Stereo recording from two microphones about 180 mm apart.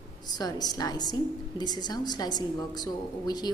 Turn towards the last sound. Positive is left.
turn(degrees=20)  # may be behind; listen again after turning